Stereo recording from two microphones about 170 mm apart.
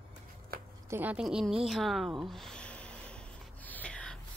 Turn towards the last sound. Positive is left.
turn(degrees=5)  # may be behind; listen again after turning